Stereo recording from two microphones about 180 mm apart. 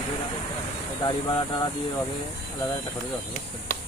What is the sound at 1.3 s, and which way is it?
Speech, 25° left (ahead or behind).